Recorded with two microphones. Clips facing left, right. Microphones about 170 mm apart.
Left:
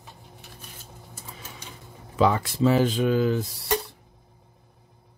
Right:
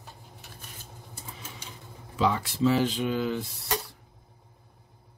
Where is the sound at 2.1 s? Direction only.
55° left (ahead or behind).